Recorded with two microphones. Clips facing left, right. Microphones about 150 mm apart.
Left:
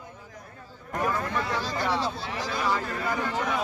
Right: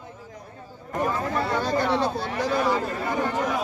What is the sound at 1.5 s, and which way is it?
Speech, 55° right (ahead or behind).